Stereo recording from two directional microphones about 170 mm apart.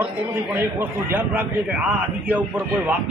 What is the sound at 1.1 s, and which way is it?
Speech, 10° right (ahead or behind).